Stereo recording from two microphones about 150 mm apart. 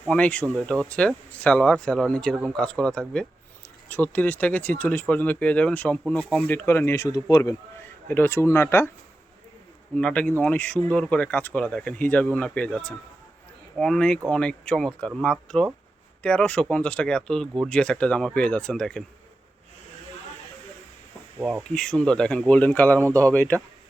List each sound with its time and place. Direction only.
0.1 s speech: 10° left (ahead or behind); by 7.5 s 25° left (ahead or behind)
8.0 s speech: 15° left (ahead or behind)
9.9 s speech: 10° left (ahead or behind)
21.6 s speech: 5° left (ahead or behind)
23.0 s speech: 20° right (ahead or behind)
23.3 s speech: 10° left (ahead or behind)